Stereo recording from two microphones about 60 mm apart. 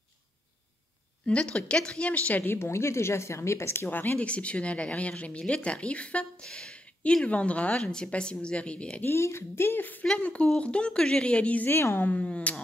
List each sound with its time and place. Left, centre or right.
1.2 s speech: centre
2.4 s a woman's voice: left
3.9 s speech: left
4.3 s speech: centre
9.0 s speech: left
10.1 s speech: centre
11.7 s a woman's voice: left
12.1 s speech: left